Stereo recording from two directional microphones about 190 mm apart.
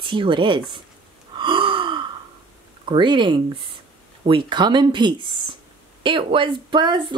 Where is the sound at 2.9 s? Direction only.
25° right (ahead or behind).